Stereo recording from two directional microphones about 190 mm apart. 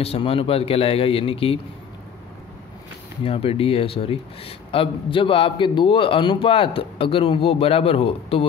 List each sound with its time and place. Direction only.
0.0 s a man's voice: 30° left (ahead or behind)
3.3 s a man's voice: 30° left (ahead or behind)